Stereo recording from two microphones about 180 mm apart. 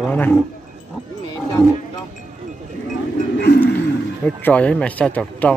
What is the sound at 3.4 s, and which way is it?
Bird, 65° left (ahead or behind).